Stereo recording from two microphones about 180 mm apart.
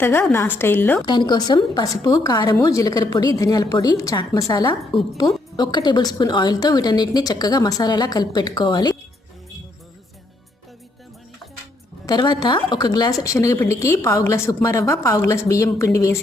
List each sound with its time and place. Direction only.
0.0 s a woman's voice: 10° left (ahead or behind)
1.0 s a woman's voice: 25° left (ahead or behind)
12.0 s a woman's voice: 25° left (ahead or behind)